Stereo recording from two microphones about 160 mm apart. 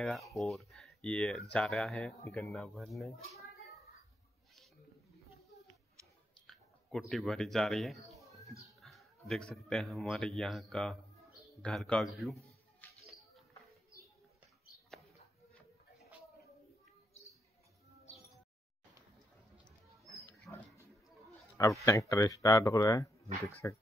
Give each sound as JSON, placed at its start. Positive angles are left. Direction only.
{"t": 0.0, "sound": "speech", "side_deg": 0}
{"t": 2.2, "sound": "speech", "side_deg": 15}
{"t": 2.5, "sound": "speech", "side_deg": 5}
{"t": 6.4, "sound": "speech", "side_deg": 0}
{"t": 8.2, "sound": "a sound", "side_deg": 20}
{"t": 8.6, "sound": "speech", "side_deg": 0}
{"t": 12.8, "sound": "music", "side_deg": 10}
{"t": 20.5, "sound": "a sound", "side_deg": 15}
{"t": 21.5, "sound": "speech", "side_deg": 20}